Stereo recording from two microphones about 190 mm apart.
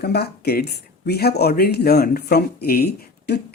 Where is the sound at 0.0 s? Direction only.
60° left (ahead or behind).